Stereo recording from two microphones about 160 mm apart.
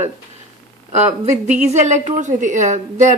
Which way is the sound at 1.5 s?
50° right (ahead or behind).